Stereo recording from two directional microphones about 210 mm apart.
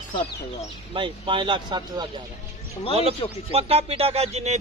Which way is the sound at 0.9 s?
25° right (ahead or behind).